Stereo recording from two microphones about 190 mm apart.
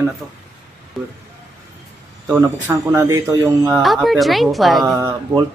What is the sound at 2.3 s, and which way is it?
Speech, 10° right (ahead or behind).